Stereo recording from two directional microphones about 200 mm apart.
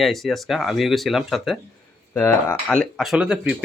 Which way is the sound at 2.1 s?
10° left (ahead or behind).